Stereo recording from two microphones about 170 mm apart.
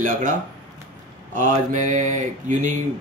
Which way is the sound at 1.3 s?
50° right (ahead or behind).